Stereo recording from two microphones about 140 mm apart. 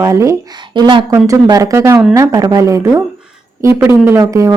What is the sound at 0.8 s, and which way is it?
Speech, 35° right (ahead or behind).